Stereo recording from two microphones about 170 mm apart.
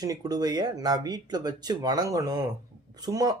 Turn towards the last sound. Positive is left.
turn(degrees=-20)  # may be behind; listen again after turning